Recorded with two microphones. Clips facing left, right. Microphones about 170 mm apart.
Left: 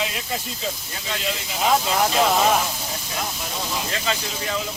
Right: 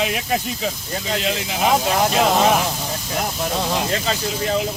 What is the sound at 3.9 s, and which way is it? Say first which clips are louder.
Speech: right 4 dB; 35° right (ahead or behind).